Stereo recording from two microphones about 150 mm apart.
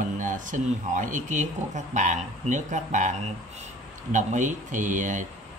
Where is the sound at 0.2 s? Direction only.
60° right (ahead or behind).